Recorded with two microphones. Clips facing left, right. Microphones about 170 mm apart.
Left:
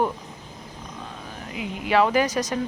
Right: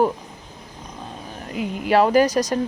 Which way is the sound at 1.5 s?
45° right (ahead or behind).